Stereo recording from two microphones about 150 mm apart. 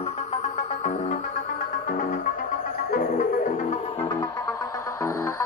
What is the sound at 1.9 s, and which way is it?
Music, 70° left (ahead or behind).